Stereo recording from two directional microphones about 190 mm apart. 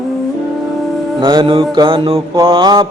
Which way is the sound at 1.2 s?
25° right (ahead or behind).